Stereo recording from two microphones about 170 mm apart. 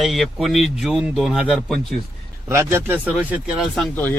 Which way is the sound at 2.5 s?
15° right (ahead or behind).